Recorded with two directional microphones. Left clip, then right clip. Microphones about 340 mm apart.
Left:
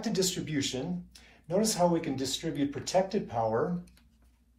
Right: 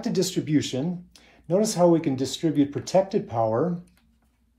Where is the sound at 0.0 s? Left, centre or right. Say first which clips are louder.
Right 5 dB; centre.